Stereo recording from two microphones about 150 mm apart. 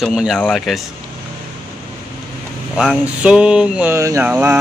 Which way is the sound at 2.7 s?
5° right (ahead or behind).